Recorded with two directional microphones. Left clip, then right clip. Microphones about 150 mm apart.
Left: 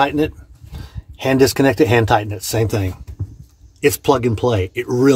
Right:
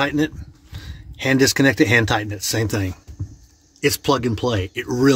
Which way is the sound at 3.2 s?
60° left (ahead or behind).